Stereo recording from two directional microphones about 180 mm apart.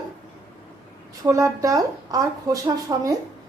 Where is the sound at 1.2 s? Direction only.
20° right (ahead or behind).